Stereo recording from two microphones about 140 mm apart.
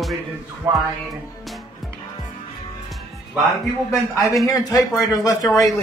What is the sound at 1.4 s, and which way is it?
Music, centre (ahead or behind).